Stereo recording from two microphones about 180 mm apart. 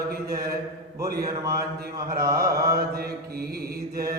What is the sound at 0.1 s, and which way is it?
Mantra, 60° right (ahead or behind).